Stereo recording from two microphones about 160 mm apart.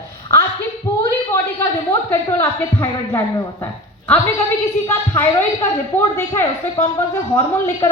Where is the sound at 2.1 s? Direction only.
15° left (ahead or behind).